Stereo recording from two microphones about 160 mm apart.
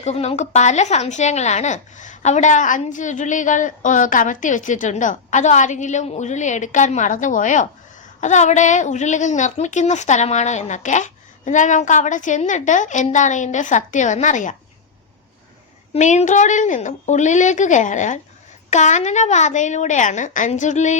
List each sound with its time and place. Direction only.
0.0 s a woman's voice: 40° left (ahead or behind)
15.9 s a woman's voice: 45° left (ahead or behind)